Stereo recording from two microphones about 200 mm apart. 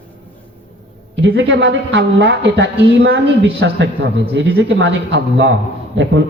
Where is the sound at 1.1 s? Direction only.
65° right (ahead or behind).